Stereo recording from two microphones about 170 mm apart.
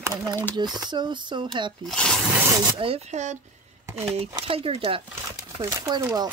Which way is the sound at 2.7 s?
35° right (ahead or behind).